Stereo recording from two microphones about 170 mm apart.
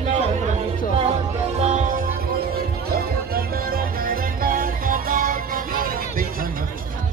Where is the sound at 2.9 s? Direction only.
60° right (ahead or behind).